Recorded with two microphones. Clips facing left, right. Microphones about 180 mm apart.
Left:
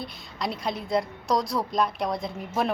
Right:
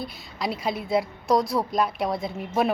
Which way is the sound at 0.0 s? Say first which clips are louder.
Right 2 dB; centre (ahead or behind).